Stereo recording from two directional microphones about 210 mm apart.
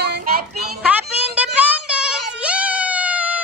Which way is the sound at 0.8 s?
5° right (ahead or behind).